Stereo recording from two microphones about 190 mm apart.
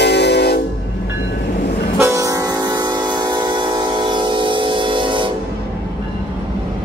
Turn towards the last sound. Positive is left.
turn(degrees=-25)  # may be behind; listen again after turning